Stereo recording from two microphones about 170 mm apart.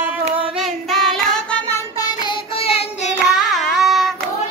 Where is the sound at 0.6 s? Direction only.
Centre (ahead or behind).